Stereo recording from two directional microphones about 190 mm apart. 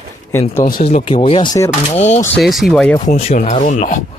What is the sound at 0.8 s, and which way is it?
Speech, 30° left (ahead or behind).